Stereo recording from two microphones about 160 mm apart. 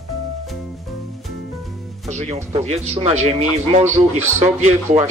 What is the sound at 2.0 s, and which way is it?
Speech, 45° right (ahead or behind).